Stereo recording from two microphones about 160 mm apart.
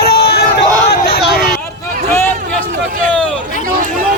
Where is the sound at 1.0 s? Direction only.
75° left (ahead or behind).